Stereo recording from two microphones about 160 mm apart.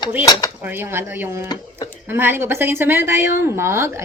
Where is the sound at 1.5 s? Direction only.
25° left (ahead or behind).